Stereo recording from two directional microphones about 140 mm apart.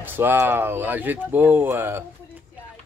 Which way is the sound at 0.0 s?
15° right (ahead or behind).